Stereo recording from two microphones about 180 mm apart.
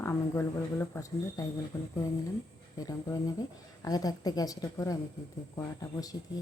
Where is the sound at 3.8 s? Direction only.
20° left (ahead or behind).